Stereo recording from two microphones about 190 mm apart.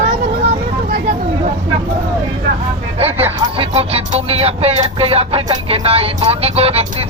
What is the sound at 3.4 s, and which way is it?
Speech, 30° right (ahead or behind).